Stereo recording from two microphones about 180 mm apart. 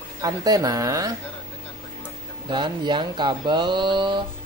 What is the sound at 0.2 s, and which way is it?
Speech, 20° right (ahead or behind).